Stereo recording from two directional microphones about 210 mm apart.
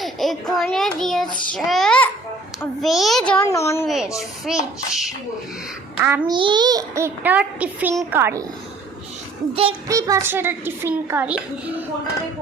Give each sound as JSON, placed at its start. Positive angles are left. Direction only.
{"t": 0.0, "sound": "a child's voice", "side_deg": 0}
{"t": 3.4, "sound": "a child's voice", "side_deg": 15}
{"t": 3.8, "sound": "a child's voice", "side_deg": 0}
{"t": 6.3, "sound": "a child's voice", "side_deg": -20}
{"t": 9.5, "sound": "a child's voice", "side_deg": -25}
{"t": 9.9, "sound": "a child's voice", "side_deg": -15}